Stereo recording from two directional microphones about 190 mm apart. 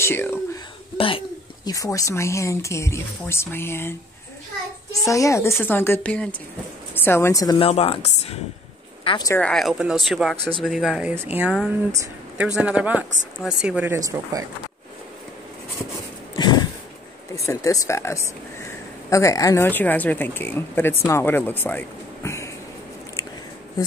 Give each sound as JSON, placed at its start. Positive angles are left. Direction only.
{"t": 0.0, "sound": "speech", "side_deg": 10}
{"t": 0.9, "sound": "speech", "side_deg": 30}
{"t": 5.0, "sound": "a woman's voice", "side_deg": 15}
{"t": 9.0, "sound": "speech", "side_deg": 25}
{"t": 9.3, "sound": "speech", "side_deg": 5}
{"t": 11.9, "sound": "a woman's voice", "side_deg": -15}
{"t": 16.3, "sound": "a sound", "side_deg": 20}
{"t": 17.5, "sound": "speech", "side_deg": 15}